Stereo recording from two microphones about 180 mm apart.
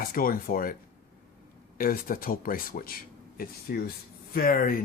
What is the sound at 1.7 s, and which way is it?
Speech, 50° left (ahead or behind).